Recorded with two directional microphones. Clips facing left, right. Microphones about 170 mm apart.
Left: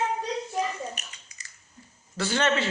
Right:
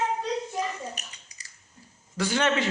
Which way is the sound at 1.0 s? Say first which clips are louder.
Even; 35° right (ahead or behind).